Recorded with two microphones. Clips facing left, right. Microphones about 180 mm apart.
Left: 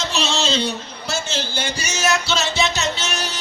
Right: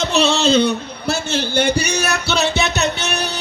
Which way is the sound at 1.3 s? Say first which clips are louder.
Right 8 dB; 60° right (ahead or behind).